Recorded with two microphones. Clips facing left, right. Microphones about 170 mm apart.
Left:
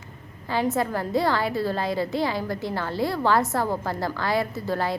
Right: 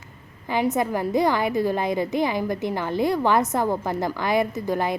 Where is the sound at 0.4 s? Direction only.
15° right (ahead or behind).